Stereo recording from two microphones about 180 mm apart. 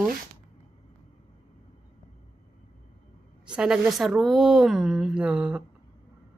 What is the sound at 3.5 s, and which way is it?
A woman's voice, 5° right (ahead or behind).